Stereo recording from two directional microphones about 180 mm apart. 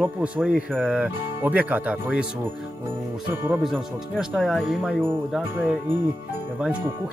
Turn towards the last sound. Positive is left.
turn(degrees=-5)  # may be behind; listen again after turning